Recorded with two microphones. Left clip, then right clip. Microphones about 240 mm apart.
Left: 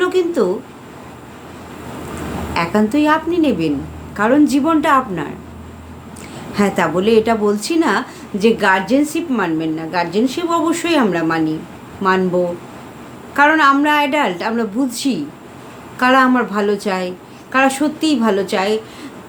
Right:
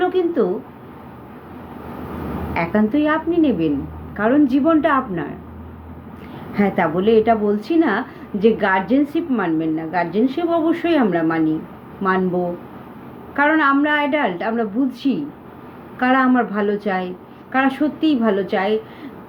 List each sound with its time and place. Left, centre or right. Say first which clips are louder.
0.0 s a woman's voice: left 2 dB; centre
2.5 s a woman's voice: left 3 dB; centre
6.5 s a woman's voice: left 2 dB; centre
13.3 s a woman's voice: left 4 dB; centre